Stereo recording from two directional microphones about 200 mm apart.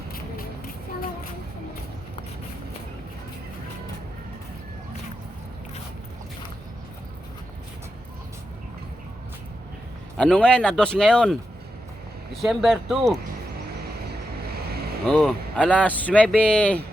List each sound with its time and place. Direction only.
10.2 s speech: 5° left (ahead or behind)
14.1 s vehicle: 50° right (ahead or behind)
15.0 s speech: 5° left (ahead or behind)